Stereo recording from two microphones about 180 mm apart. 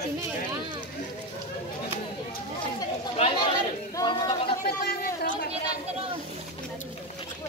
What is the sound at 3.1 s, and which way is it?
Chatter, 30° left (ahead or behind).